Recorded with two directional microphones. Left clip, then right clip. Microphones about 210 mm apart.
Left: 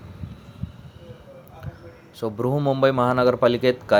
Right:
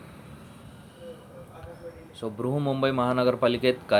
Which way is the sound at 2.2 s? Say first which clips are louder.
Left 6 dB; 25° left (ahead or behind).